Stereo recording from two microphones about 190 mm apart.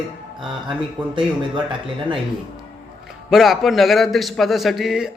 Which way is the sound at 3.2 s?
Centre (ahead or behind).